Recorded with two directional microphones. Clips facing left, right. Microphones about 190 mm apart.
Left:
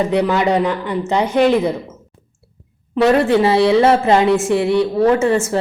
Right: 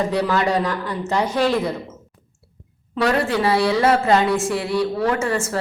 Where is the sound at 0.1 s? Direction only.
20° left (ahead or behind).